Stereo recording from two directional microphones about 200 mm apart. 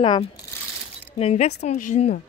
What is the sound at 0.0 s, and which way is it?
Speech, 25° left (ahead or behind).